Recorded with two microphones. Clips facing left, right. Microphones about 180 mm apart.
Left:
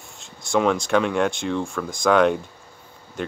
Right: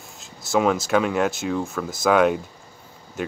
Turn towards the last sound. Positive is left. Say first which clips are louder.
# right 1 dB
turn(degrees=-5)  # may be behind; listen again after turning